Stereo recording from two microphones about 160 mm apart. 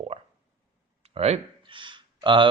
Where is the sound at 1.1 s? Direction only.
40° right (ahead or behind).